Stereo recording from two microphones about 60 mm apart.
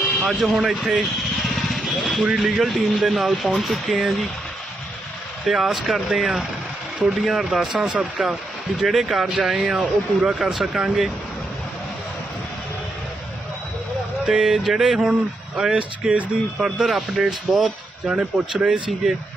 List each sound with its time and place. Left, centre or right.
0.2 s speech: centre
5.5 s speech: centre
7.8 s speech: centre
8.8 s speech: centre
14.2 s speech: centre